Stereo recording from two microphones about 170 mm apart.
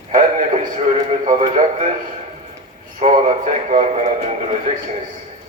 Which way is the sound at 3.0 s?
40° right (ahead or behind).